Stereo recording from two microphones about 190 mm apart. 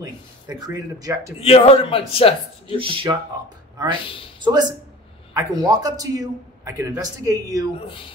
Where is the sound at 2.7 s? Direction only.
30° right (ahead or behind).